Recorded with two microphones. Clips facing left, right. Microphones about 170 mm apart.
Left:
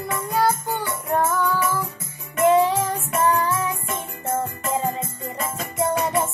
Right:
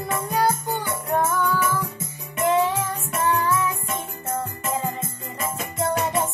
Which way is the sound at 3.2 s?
35° left (ahead or behind).